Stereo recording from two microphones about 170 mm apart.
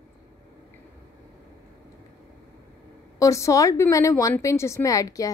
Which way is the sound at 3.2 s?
20° left (ahead or behind).